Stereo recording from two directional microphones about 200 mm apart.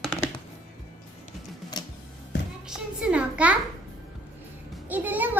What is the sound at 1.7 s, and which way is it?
Music, 20° left (ahead or behind).